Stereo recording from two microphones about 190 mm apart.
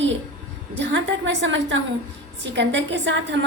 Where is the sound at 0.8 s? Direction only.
85° right.